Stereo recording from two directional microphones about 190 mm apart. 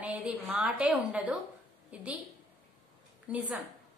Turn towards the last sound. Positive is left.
turn(degrees=-5)  # may be behind; listen again after turning